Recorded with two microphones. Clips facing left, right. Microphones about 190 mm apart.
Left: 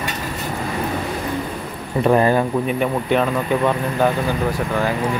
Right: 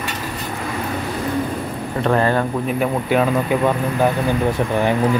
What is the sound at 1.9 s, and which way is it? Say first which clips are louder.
Speech: left 2 dB; 15° left (ahead or behind).